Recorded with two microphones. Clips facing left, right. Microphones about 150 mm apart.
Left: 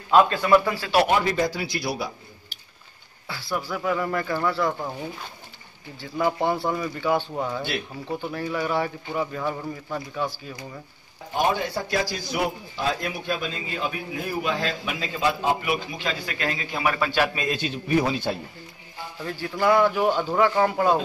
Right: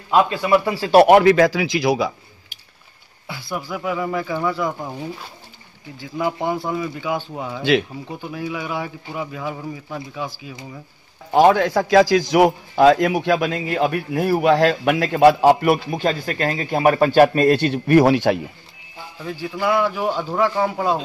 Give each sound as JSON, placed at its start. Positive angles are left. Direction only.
{"t": 0.1, "sound": "speech", "side_deg": -15}
{"t": 0.9, "sound": "a man's voice", "side_deg": -65}
{"t": 3.3, "sound": "a sound", "side_deg": -15}
{"t": 3.5, "sound": "speech", "side_deg": -5}
{"t": 6.0, "sound": "speech", "side_deg": -5}
{"t": 11.3, "sound": "a man's voice", "side_deg": -90}
{"t": 19.2, "sound": "speech", "side_deg": -5}